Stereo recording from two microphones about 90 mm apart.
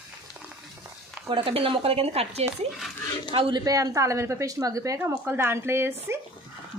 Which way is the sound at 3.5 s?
40° right (ahead or behind).